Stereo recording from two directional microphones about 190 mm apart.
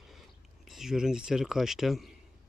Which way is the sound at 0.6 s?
Centre (ahead or behind).